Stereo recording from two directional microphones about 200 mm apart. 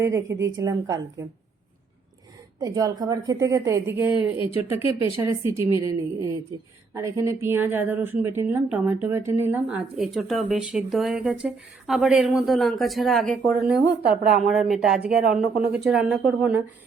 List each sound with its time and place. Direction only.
0.0 s a woman's voice: 15° right (ahead or behind)
2.6 s a woman's voice: 15° right (ahead or behind)
4.4 s speech: 30° left (ahead or behind)
5.2 s a woman's voice: 15° right (ahead or behind)
6.9 s a woman's voice: 15° right (ahead or behind)